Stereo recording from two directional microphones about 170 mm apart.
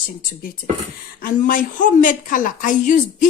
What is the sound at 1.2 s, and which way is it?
A woman's voice, 50° left (ahead or behind).